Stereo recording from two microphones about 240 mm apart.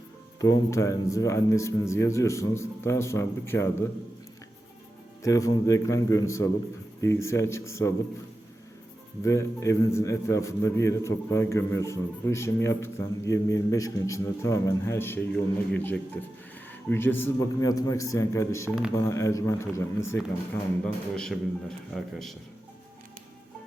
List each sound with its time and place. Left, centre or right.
0.3 s a man's voice: centre
5.2 s a man's voice: centre
9.2 s a man's voice: centre